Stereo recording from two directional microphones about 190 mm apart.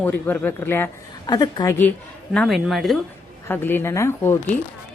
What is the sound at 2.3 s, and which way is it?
Speech, 5° left (ahead or behind).